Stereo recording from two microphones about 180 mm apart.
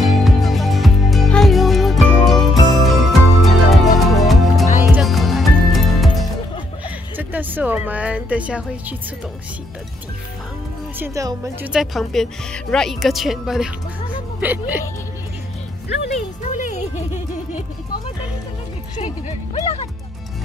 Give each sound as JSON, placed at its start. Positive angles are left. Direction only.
{"t": 0.0, "sound": "music", "side_deg": 0}
{"t": 7.2, "sound": "a woman's voice", "side_deg": -10}
{"t": 11.0, "sound": "speech", "side_deg": -15}
{"t": 11.7, "sound": "speech", "side_deg": 0}
{"t": 16.2, "sound": "speech", "side_deg": 45}
{"t": 19.2, "sound": "speech", "side_deg": 40}